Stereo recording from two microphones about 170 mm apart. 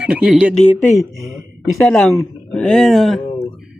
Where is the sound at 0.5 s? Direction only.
5° left (ahead or behind).